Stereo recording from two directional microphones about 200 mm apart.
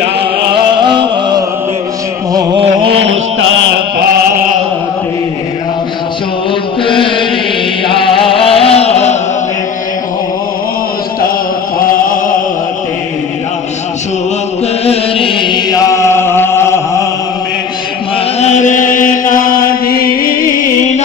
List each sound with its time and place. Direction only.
0.5 s a sound: 25° right (ahead or behind)
2.9 s chant: 70° right (ahead or behind); by 4.5 s 50° right (ahead or behind)
6.8 s chant: 25° left (ahead or behind)
7.9 s a sound: 25° left (ahead or behind)
11.8 s chant: 45° left (ahead or behind)
14.9 s chant: 25° left (ahead or behind)
18.4 s chant: 35° left (ahead or behind)